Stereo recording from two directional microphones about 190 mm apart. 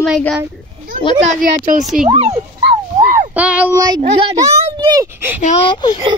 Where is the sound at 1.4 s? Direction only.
40° right (ahead or behind).